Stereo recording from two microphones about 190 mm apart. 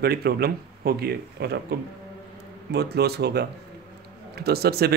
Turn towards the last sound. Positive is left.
turn(degrees=-55)  # may be behind; listen again after turning